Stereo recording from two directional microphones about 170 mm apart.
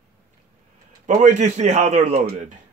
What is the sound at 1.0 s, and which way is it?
A man's voice, 45° right (ahead or behind).